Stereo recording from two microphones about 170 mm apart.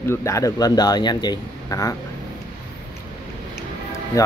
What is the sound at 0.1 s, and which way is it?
Speech, 20° left (ahead or behind).